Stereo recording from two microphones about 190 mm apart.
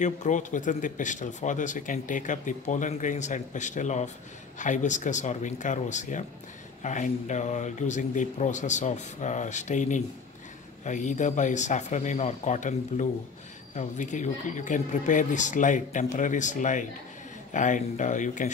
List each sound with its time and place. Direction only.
0.0 s speech: 40° left (ahead or behind)